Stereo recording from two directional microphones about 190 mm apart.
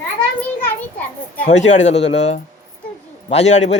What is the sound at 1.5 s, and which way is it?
A man's voice, 40° left (ahead or behind).